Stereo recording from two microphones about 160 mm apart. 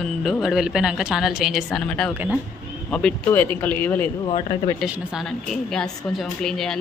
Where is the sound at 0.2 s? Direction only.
Centre (ahead or behind).